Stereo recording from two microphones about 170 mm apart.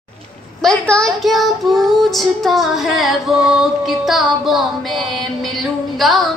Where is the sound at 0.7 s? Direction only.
5° left (ahead or behind).